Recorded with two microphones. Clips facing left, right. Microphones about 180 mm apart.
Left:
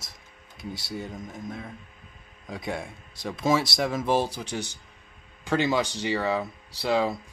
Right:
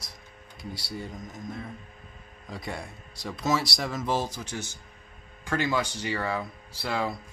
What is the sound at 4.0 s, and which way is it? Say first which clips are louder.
Speech: left 4 dB; 30° left (ahead or behind).